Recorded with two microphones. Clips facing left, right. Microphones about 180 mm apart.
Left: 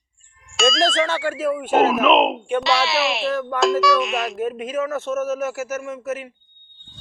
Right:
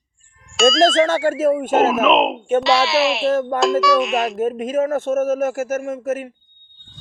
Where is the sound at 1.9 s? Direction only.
Centre (ahead or behind).